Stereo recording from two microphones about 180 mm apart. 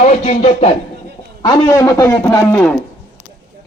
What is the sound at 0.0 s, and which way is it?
Speech, 40° left (ahead or behind).